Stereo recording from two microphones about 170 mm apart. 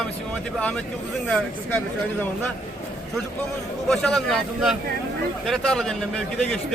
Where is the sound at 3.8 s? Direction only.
Centre (ahead or behind).